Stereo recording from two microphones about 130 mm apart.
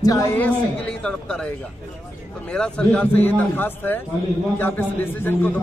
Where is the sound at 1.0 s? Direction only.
10° left (ahead or behind).